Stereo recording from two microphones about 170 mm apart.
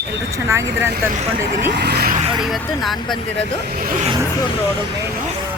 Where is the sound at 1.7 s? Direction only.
75° right (ahead or behind).